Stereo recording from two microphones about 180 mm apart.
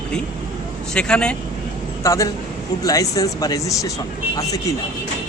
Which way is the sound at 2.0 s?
15° left (ahead or behind).